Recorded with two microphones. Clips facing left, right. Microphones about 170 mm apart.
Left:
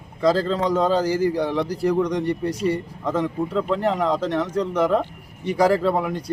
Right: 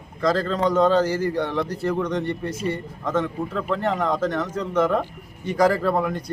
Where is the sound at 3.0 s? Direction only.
10° left (ahead or behind).